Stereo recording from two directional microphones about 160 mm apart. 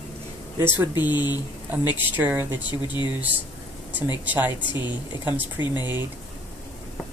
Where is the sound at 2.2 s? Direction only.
15° right (ahead or behind).